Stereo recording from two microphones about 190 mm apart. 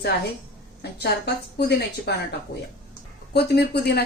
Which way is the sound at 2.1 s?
60° left (ahead or behind).